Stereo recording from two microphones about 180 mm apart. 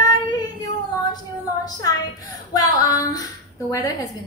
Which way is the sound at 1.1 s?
20° left (ahead or behind).